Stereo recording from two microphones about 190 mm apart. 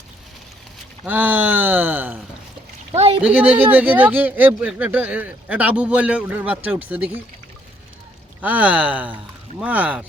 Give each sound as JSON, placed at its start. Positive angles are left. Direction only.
{"t": 1.0, "sound": "speech", "side_deg": -10}
{"t": 2.9, "sound": "boat", "side_deg": -35}
{"t": 3.2, "sound": "speech", "side_deg": -5}
{"t": 8.4, "sound": "speech", "side_deg": -5}